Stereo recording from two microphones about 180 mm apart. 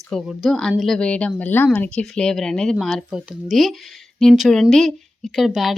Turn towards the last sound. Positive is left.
turn(degrees=0)  # may be behind; listen again after turning